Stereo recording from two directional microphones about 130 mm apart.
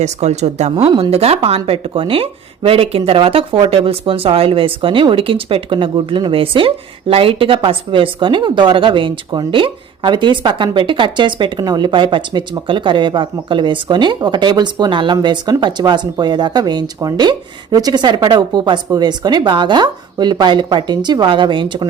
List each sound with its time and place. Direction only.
0.0 s speech: 60° right (ahead or behind); by 21.8 s 40° right (ahead or behind)